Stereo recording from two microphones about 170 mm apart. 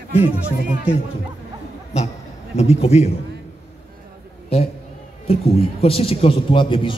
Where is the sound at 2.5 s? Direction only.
40° left (ahead or behind).